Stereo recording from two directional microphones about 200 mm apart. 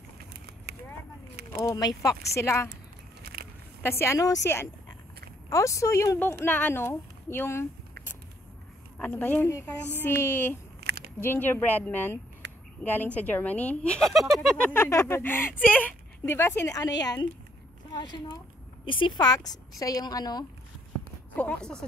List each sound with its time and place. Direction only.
0.3 s a sound: 55° right (ahead or behind)
1.7 s speech: 20° left (ahead or behind)
3.2 s walk: 50° right (ahead or behind)
3.8 s speech: 15° left (ahead or behind)
8.9 s speech: 10° left (ahead or behind)
10.8 s a sound: 55° right (ahead or behind)
11.1 s speech: 10° left (ahead or behind)
14.7 s speech: 10° left (ahead or behind)
21.4 s speech: 5° left (ahead or behind)